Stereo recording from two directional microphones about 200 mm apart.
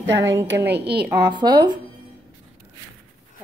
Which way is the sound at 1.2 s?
20° right (ahead or behind).